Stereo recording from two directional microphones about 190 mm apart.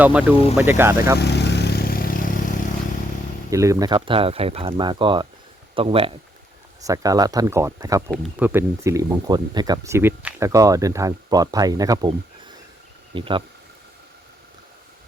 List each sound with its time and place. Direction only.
0.0 s speech: 5° right (ahead or behind)
1.2 s vehicle: 60° left (ahead or behind)
3.5 s speech: 15° right (ahead or behind)
6.8 s speech: 20° right (ahead or behind)
13.1 s speech: 25° right (ahead or behind)